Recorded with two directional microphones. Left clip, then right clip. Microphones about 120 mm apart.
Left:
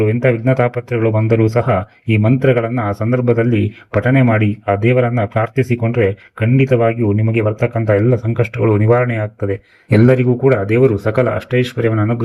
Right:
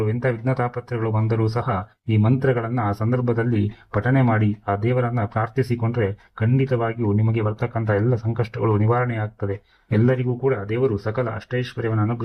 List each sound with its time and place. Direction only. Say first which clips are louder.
0.0 s speech: left 9 dB; 20° left (ahead or behind)
2.6 s speech: left 7 dB; 5° left (ahead or behind)
4.8 s speech: left 9 dB; 15° left (ahead or behind)
9.5 s speech: left 9 dB; 25° left (ahead or behind)